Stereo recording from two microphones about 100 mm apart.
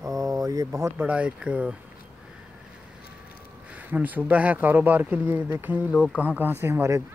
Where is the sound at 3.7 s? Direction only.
15° right (ahead or behind).